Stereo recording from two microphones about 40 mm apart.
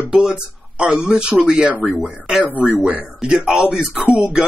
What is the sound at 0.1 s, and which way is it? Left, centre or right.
Speech, centre.